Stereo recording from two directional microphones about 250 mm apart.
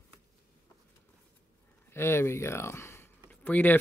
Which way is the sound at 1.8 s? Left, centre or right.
Centre.